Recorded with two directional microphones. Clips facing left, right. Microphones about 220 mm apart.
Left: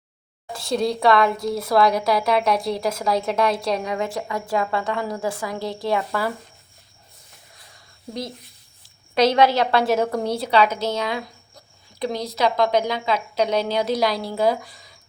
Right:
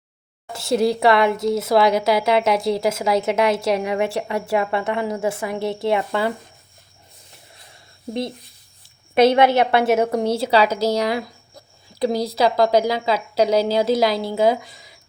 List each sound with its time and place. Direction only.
0.5 s a woman's voice: 25° right (ahead or behind)
1.8 s a woman's voice: centre (ahead or behind)
2.0 s a woman's voice: 25° right (ahead or behind)
9.1 s a woman's voice: 25° right (ahead or behind)
10.3 s a woman's voice: 30° right (ahead or behind)
13.5 s a woman's voice: 5° right (ahead or behind)
13.7 s a woman's voice: 25° right (ahead or behind)
14.1 s a woman's voice: centre (ahead or behind)
14.3 s a woman's voice: 25° right (ahead or behind)